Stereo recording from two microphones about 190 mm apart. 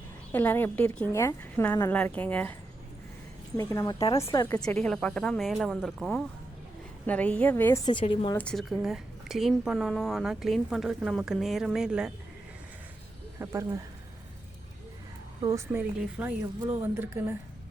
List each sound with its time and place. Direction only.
0.3 s speech: 10° left (ahead or behind)
3.6 s speech: 15° left (ahead or behind)
3.9 s speech: 30° left (ahead or behind)
4.2 s speech: 15° left (ahead or behind)
4.6 s a woman's voice: 5° left (ahead or behind)
7.9 s a woman's voice: 25° left (ahead or behind)
8.4 s a woman's voice: 5° left (ahead or behind)
13.4 s a woman's voice: 15° right (ahead or behind)
15.4 s a woman's voice: 20° right (ahead or behind)